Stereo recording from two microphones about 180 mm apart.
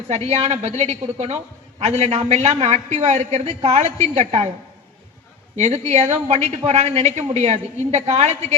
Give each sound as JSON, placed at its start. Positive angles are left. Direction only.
{"t": 0.1, "sound": "a man's voice", "side_deg": -35}
{"t": 5.5, "sound": "a man's voice", "side_deg": -40}